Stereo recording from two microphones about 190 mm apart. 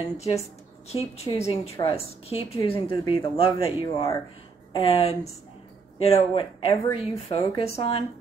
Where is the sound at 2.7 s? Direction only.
20° left (ahead or behind).